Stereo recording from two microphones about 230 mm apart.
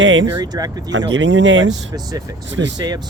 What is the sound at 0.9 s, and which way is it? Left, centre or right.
Speech, right.